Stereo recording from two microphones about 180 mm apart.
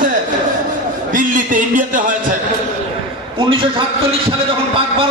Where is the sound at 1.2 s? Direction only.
45° right (ahead or behind).